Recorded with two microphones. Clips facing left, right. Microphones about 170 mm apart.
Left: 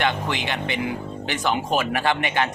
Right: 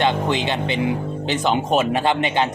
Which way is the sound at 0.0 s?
20° right (ahead or behind).